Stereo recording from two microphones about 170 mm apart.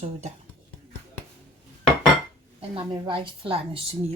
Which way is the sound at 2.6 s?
30° right (ahead or behind).